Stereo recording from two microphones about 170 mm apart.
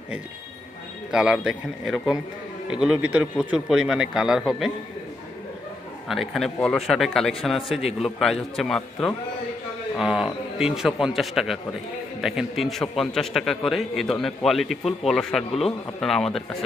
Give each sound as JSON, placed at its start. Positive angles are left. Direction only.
{"t": 1.1, "sound": "a man's voice", "side_deg": -5}
{"t": 6.0, "sound": "a man's voice", "side_deg": 0}